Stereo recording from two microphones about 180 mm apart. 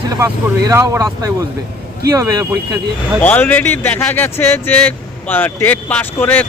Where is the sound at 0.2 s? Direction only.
15° right (ahead or behind).